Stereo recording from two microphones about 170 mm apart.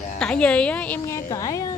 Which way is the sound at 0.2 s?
5° left (ahead or behind).